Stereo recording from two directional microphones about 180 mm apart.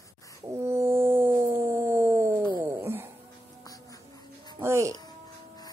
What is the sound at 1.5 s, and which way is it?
Dog, 10° right (ahead or behind).